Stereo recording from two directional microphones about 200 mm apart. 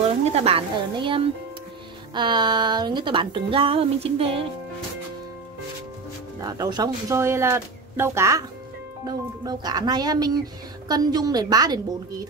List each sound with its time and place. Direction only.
0.2 s speech: 30° right (ahead or behind)
6.4 s speech: 20° right (ahead or behind)